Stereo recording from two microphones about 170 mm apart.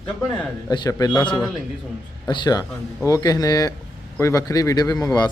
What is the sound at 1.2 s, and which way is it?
Speech, 5° left (ahead or behind).